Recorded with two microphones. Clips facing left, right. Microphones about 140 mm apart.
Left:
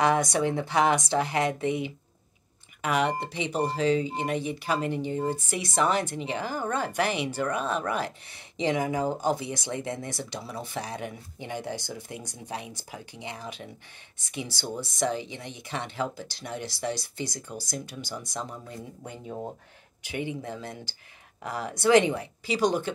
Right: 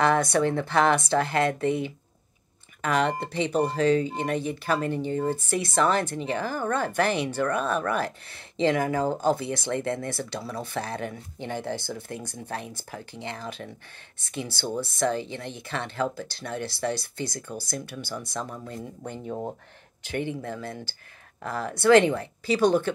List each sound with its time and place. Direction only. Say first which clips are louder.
0.0 s speech: right 2 dB; 15° left (ahead or behind)
14.8 s speech: right 2 dB; 15° left (ahead or behind)
20.0 s speech: right 2 dB; 10° left (ahead or behind)